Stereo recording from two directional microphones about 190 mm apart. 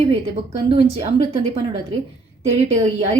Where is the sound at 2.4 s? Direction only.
35° right (ahead or behind).